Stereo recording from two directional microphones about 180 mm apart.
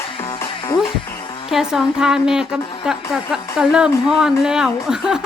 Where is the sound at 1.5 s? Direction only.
5° right (ahead or behind).